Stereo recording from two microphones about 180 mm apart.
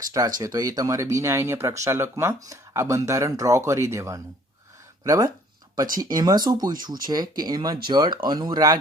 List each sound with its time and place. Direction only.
0.1 s speech: 20° right (ahead or behind)